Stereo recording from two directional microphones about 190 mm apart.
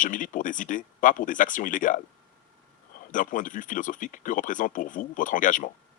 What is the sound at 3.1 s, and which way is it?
Speech, 45° left (ahead or behind).